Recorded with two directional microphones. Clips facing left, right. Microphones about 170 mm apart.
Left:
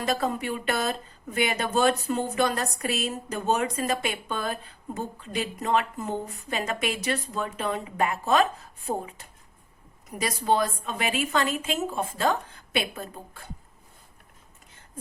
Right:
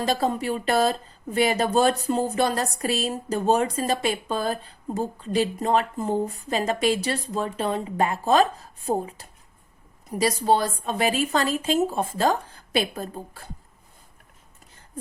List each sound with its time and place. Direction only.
0.0 s speech: 30° right (ahead or behind)